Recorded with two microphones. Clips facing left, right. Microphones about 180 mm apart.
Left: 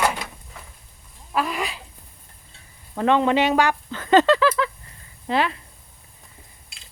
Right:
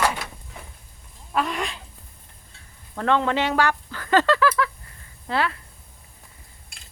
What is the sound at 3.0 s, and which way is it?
Speech, 15° left (ahead or behind).